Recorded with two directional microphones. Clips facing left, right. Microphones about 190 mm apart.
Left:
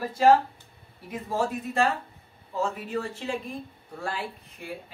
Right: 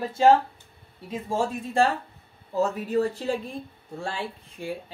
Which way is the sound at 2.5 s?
40° right (ahead or behind).